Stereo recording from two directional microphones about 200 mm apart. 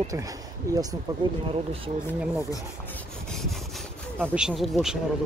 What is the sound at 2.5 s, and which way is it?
Rub, 15° left (ahead or behind).